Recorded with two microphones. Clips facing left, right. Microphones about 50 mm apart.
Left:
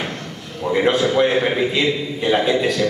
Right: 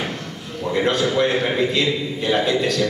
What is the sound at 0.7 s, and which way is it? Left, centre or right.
A man's voice, centre.